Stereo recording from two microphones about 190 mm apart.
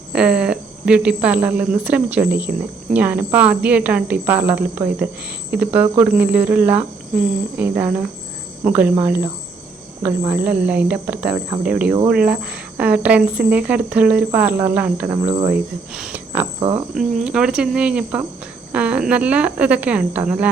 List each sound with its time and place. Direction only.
0.1 s a woman's voice: 5° right (ahead or behind)
16.6 s speech: 30° right (ahead or behind)
16.9 s speech: centre (ahead or behind)